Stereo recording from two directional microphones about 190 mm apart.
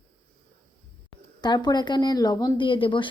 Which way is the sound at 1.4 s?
20° left (ahead or behind).